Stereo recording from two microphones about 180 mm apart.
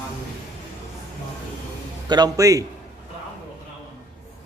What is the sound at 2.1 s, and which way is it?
Speech, 20° right (ahead or behind).